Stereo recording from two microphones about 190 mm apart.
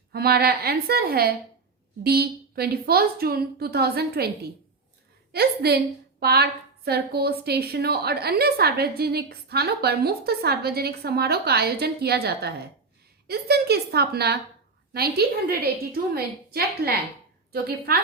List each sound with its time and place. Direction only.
0.1 s a woman's voice: 55° right (ahead or behind)